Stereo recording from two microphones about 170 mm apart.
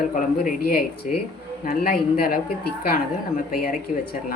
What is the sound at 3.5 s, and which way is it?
Speech, 60° left (ahead or behind).